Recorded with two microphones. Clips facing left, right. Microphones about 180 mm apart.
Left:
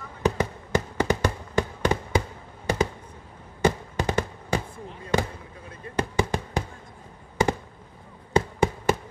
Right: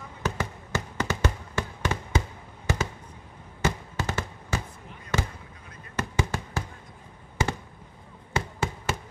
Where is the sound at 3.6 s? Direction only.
15° left (ahead or behind).